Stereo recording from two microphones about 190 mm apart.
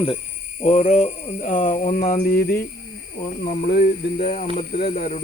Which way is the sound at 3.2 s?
40° left (ahead or behind).